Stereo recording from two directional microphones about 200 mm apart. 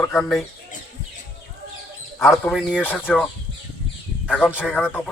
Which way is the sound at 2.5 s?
Centre (ahead or behind).